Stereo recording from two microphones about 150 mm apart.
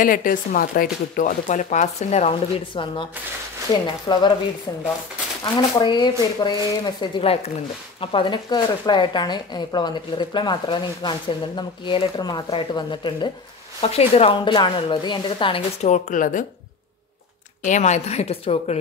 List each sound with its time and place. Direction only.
0.0 s speech: 65° left (ahead or behind); by 2.3 s 45° left (ahead or behind)
2.7 s a woman's voice: 35° left (ahead or behind)
5.4 s a woman's voice: 30° left (ahead or behind)
13.7 s a woman's voice: 40° left (ahead or behind)
15.9 s speech: 60° left (ahead or behind)
17.6 s a woman's voice: 50° left (ahead or behind)